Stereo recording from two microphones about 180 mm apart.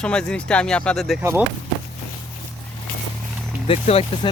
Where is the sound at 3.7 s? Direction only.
35° left (ahead or behind).